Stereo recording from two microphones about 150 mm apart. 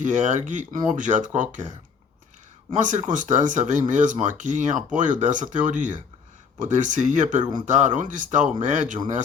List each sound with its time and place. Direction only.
0.0 s speech: 55° right (ahead or behind)
2.7 s speech: 55° right (ahead or behind)